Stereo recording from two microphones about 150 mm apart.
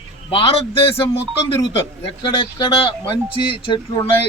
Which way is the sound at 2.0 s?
35° left (ahead or behind).